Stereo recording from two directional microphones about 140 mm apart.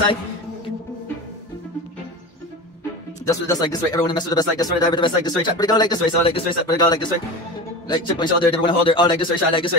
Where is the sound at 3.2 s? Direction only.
25° left (ahead or behind).